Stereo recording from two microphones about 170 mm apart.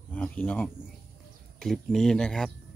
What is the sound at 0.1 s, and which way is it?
Speech, 10° left (ahead or behind).